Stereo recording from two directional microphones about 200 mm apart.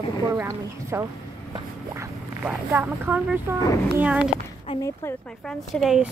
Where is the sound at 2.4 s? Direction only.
10° right (ahead or behind).